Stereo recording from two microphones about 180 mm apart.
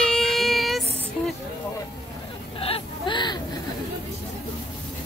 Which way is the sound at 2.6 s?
30° left (ahead or behind).